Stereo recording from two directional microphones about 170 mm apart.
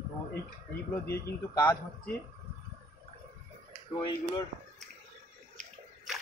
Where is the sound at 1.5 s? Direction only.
20° left (ahead or behind).